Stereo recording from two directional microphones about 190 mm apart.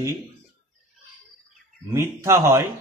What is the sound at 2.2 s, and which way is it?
Speech, 15° right (ahead or behind).